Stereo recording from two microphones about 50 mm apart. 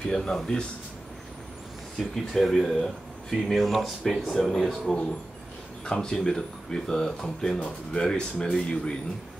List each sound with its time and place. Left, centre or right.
0.1 s speech: centre
2.3 s speech: centre
4.5 s speech: centre